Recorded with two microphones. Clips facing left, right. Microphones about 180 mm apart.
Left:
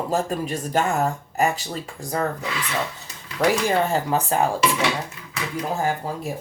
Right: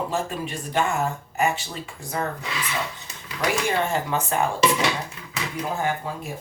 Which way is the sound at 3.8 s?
35° left (ahead or behind).